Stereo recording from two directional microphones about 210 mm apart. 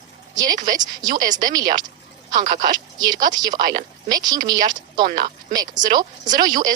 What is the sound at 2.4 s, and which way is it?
Speech, 40° right (ahead or behind).